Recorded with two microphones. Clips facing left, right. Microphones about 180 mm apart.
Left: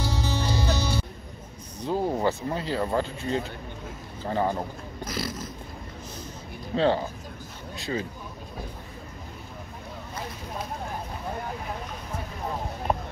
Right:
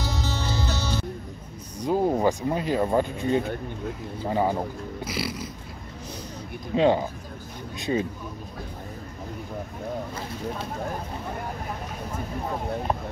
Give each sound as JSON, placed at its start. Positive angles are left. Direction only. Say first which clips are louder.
{"t": 0.0, "sound": "music", "louder": "left 1 dB", "side_deg": 10}
{"t": 1.8, "sound": "speech", "louder": "right 4 dB", "side_deg": -15}
{"t": 6.7, "sound": "speech", "louder": "right 3 dB", "side_deg": -15}